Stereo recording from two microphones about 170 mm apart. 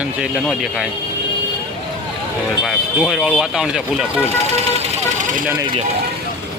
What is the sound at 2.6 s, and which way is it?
Speech, centre (ahead or behind).